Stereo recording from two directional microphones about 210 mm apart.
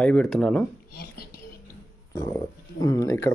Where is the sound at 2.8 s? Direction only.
15° left (ahead or behind).